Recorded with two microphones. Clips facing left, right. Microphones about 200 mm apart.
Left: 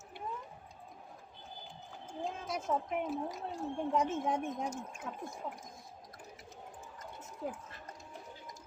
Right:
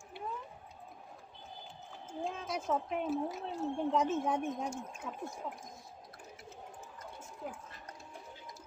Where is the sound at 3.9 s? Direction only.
10° left (ahead or behind).